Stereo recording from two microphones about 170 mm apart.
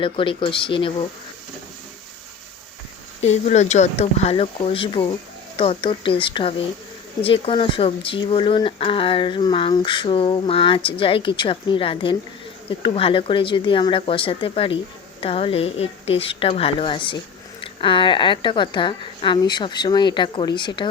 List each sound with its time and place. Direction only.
0.0 s speech: 30° left (ahead or behind)
3.2 s a woman's voice: 40° left (ahead or behind)